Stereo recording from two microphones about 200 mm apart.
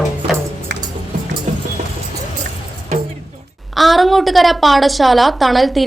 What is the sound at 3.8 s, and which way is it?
Speech, centre (ahead or behind).